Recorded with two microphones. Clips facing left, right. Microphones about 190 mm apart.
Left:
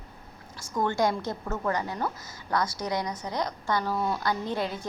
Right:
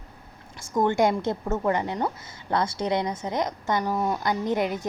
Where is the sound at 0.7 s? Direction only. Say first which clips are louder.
Right 4 dB; 20° right (ahead or behind).